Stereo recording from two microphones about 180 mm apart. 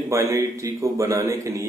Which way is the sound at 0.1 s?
15° right (ahead or behind).